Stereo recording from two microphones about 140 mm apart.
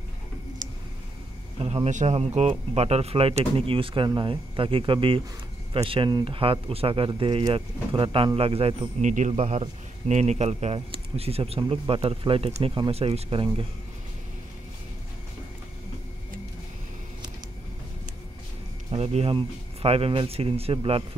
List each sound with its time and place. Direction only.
1.6 s a man's voice: 45° right (ahead or behind)
18.9 s speech: 45° right (ahead or behind)